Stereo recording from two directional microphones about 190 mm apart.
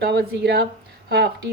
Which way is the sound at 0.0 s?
60° right (ahead or behind).